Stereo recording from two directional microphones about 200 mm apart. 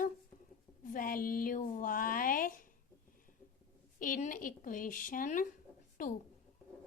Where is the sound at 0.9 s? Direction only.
45° left (ahead or behind).